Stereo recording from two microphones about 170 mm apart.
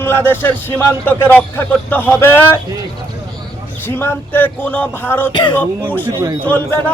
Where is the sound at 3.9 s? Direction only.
15° left (ahead or behind).